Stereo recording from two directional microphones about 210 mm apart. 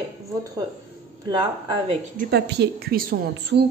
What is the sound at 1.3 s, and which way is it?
Speech, 20° right (ahead or behind).